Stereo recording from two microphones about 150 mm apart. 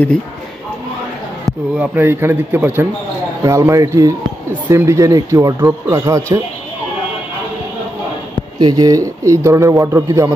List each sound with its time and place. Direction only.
1.8 s a man's voice: 15° right (ahead or behind)
8.5 s speech: 25° right (ahead or behind)